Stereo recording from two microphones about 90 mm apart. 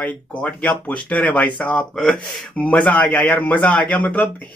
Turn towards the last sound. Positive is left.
turn(degrees=15)  # may be behind; listen again after turning